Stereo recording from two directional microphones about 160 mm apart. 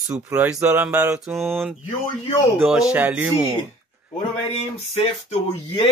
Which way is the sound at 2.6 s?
5° right (ahead or behind).